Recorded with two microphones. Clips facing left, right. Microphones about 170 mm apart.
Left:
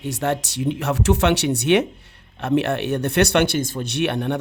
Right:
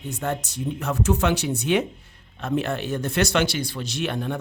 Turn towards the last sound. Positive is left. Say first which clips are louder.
# left 5 dB
turn(degrees=70)  # may be behind; listen again after turning